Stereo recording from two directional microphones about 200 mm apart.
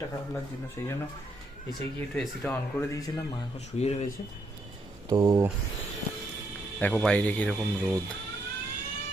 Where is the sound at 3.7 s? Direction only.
35° left (ahead or behind).